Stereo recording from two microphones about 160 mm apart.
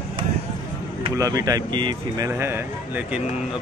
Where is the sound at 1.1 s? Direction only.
20° right (ahead or behind).